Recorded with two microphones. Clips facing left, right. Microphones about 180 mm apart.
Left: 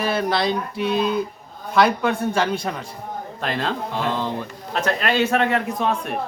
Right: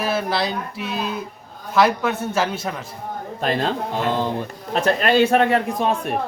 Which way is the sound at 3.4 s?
35° right (ahead or behind).